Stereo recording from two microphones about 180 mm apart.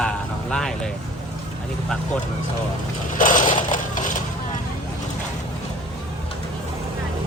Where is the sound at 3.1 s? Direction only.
45° left (ahead or behind).